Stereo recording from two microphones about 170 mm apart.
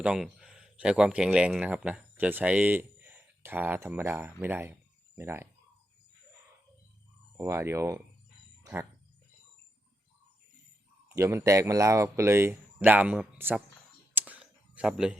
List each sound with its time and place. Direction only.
0.0 s speech: 5° right (ahead or behind)
7.3 s speech: 15° right (ahead or behind)
11.1 s speech: 15° right (ahead or behind)
14.1 s a sound: 10° right (ahead or behind)